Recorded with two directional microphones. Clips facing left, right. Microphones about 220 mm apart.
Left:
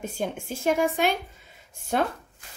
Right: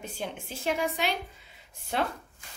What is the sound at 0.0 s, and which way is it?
A woman's voice, 45° left (ahead or behind).